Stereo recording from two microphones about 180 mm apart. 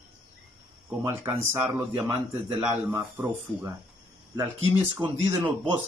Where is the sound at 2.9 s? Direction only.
15° right (ahead or behind).